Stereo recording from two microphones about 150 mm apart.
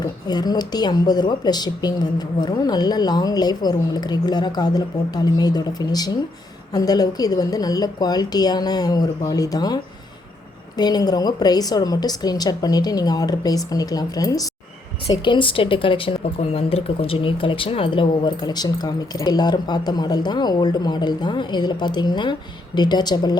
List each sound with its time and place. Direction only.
0.0 s speech: 25° left (ahead or behind)